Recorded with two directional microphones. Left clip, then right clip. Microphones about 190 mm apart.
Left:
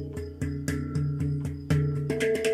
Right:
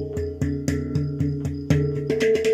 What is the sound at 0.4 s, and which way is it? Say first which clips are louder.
Music: right 7 dB; 20° right (ahead or behind).